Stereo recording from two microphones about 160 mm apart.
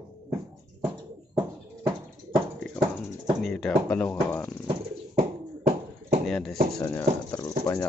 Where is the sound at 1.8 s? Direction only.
15° right (ahead or behind).